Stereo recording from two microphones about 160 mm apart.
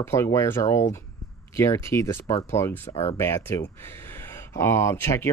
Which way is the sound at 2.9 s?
35° left (ahead or behind).